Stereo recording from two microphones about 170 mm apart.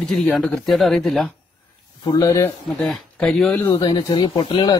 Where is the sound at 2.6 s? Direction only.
Centre (ahead or behind).